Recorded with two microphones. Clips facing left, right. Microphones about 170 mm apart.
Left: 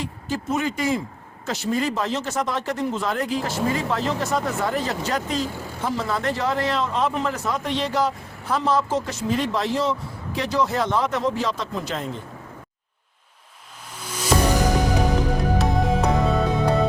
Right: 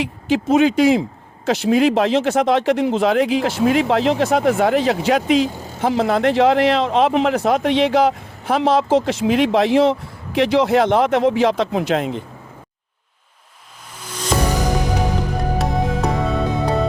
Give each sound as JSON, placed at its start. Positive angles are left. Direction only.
{"t": 0.0, "sound": "speech", "side_deg": -80}
{"t": 14.0, "sound": "music", "side_deg": 10}
{"t": 15.5, "sound": "music", "side_deg": 0}